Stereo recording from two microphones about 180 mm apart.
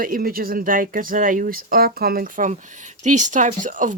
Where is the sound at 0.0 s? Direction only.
55° right (ahead or behind).